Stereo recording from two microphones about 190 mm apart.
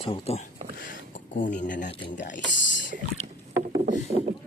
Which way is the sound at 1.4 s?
45° left (ahead or behind).